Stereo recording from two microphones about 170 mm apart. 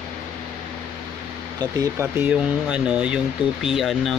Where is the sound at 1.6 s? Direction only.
15° right (ahead or behind).